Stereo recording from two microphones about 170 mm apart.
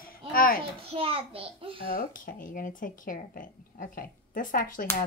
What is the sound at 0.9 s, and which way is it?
Speech, 35° right (ahead or behind).